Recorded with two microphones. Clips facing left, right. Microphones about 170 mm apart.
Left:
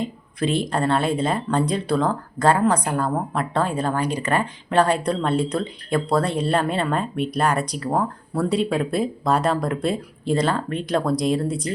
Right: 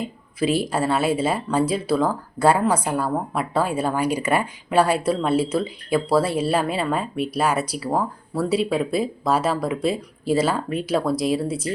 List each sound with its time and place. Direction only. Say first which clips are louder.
0.0 s a woman's voice: right 1 dB; 5° right (ahead or behind)